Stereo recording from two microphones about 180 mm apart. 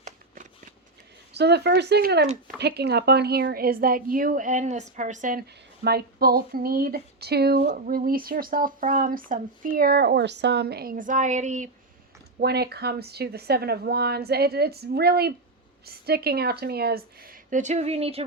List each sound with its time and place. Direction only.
1.3 s a woman's voice: 65° right (ahead or behind)
7.7 s speech: 50° right (ahead or behind)
12.4 s a woman's voice: 65° right (ahead or behind); by 18.3 s 35° right (ahead or behind)